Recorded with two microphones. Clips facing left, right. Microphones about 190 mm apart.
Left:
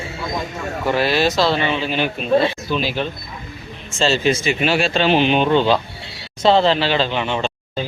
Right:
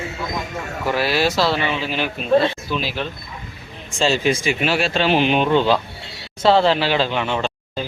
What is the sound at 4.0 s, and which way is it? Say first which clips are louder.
Speech: left 1 dB; 15° right (ahead or behind).